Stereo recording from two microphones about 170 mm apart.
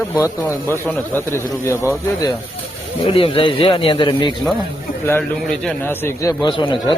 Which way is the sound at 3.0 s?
30° left (ahead or behind).